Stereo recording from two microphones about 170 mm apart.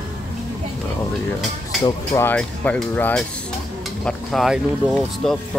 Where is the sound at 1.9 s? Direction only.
15° left (ahead or behind).